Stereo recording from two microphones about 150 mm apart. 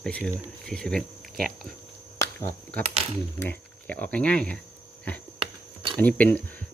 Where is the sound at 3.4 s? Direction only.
10° left (ahead or behind).